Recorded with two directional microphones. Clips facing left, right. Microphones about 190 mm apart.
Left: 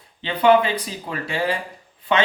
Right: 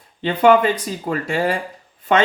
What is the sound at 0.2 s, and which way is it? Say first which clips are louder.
Speech: right 2 dB; 45° right (ahead or behind).